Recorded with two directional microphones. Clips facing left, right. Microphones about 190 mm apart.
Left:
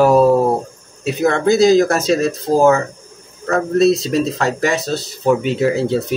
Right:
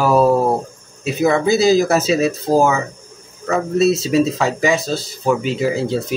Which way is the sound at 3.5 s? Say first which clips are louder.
Left 2 dB; 5° right (ahead or behind).